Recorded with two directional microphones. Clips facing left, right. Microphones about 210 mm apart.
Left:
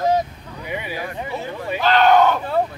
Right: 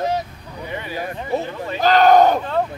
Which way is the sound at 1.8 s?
40° right (ahead or behind).